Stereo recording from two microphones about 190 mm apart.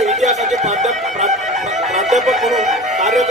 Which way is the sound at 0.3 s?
35° right (ahead or behind).